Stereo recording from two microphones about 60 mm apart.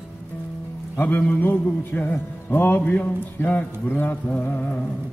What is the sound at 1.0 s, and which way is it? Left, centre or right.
Music, left.